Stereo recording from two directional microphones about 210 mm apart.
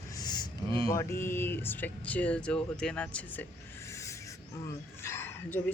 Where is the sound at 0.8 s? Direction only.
15° left (ahead or behind).